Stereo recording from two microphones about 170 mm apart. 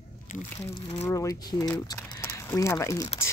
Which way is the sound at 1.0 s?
20° left (ahead or behind).